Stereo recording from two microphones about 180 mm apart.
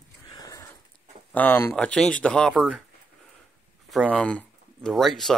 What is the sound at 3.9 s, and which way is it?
Speech, centre (ahead or behind).